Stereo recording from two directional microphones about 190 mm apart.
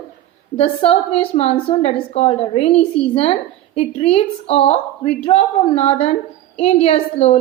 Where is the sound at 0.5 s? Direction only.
35° left (ahead or behind).